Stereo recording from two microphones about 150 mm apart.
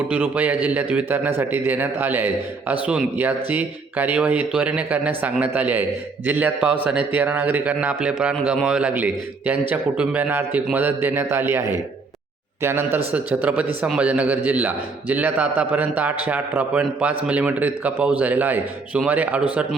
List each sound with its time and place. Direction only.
0.1 s speech: 10° right (ahead or behind)